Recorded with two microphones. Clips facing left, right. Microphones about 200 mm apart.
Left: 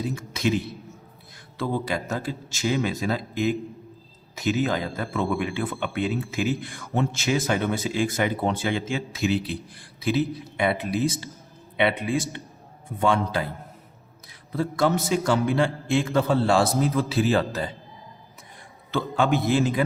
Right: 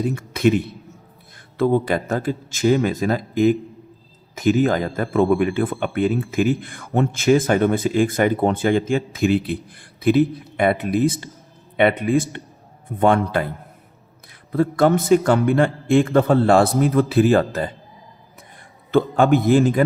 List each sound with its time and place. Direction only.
0.0 s a man's voice: 55° right (ahead or behind)
14.5 s a man's voice: 55° right (ahead or behind)
18.9 s speech: 55° right (ahead or behind)